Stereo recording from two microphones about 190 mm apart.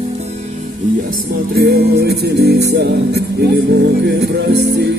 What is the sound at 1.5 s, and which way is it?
Music, 55° right (ahead or behind).